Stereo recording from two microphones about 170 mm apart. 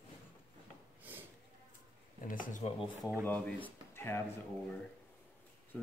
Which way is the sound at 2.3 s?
50° left (ahead or behind).